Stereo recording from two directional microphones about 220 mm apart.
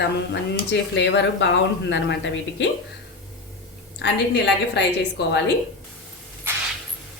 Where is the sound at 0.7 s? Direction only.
55° left (ahead or behind).